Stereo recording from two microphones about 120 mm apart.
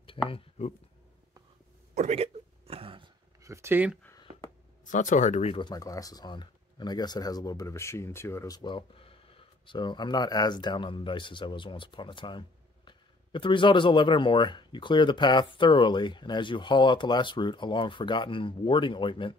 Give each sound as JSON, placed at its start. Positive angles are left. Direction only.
{"t": 0.3, "sound": "speech", "side_deg": 65}
{"t": 2.0, "sound": "a sound", "side_deg": -65}
{"t": 3.4, "sound": "speech", "side_deg": -25}
{"t": 4.8, "sound": "speech", "side_deg": 90}
{"t": 5.5, "sound": "speech", "side_deg": 40}
{"t": 5.8, "sound": "speech", "side_deg": 30}
{"t": 8.5, "sound": "speech", "side_deg": 45}